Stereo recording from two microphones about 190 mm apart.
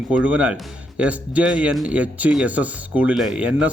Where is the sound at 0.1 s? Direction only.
5° right (ahead or behind).